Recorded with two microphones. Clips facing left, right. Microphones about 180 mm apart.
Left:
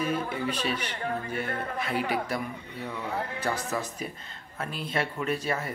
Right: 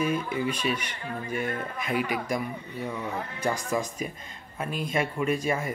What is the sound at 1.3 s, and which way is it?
Speech, 40° left (ahead or behind).